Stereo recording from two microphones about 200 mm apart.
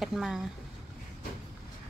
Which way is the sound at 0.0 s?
Centre (ahead or behind).